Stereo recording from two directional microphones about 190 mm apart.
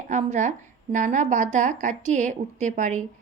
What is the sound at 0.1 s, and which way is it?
Speech, 40° right (ahead or behind).